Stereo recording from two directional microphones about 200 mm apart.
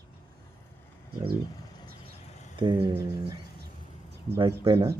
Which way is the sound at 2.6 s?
25° right (ahead or behind).